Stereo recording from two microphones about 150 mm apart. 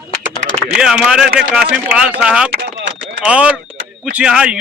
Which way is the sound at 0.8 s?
5° right (ahead or behind).